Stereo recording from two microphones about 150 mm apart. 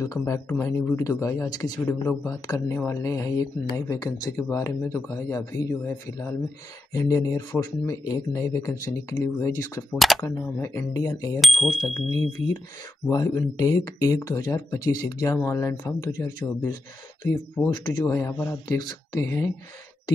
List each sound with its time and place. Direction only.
0.0 s speech: 20° left (ahead or behind)
9.9 s speech: centre (ahead or behind)
10.2 s speech: 20° left (ahead or behind)
11.4 s speech: centre (ahead or behind)
13.1 s speech: 25° left (ahead or behind)